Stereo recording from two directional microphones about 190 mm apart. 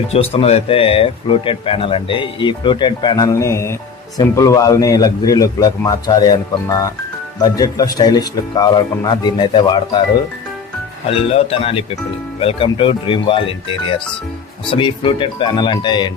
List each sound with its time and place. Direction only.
0.1 s speech: 35° left (ahead or behind)
11.1 s speech: 30° left (ahead or behind)